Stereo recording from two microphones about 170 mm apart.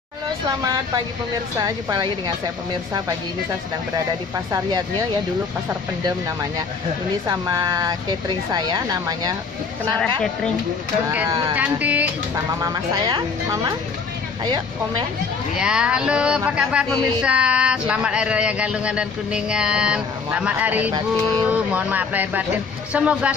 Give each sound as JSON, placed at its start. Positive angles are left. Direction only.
{"t": 1.6, "sound": "speech", "side_deg": -25}
{"t": 4.5, "sound": "speech", "side_deg": -20}
{"t": 7.2, "sound": "speech", "side_deg": -20}
{"t": 11.1, "sound": "speech", "side_deg": -15}
{"t": 11.5, "sound": "speech", "side_deg": -10}
{"t": 13.5, "sound": "speech", "side_deg": -25}
{"t": 15.5, "sound": "speech", "side_deg": -5}